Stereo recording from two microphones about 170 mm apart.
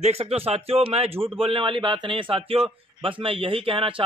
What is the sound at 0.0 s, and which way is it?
A man's voice, 35° right (ahead or behind).